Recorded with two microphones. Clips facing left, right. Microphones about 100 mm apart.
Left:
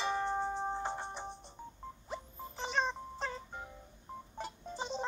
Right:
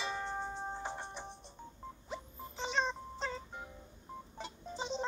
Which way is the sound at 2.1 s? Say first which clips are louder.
Left 1 dB; 5° left (ahead or behind).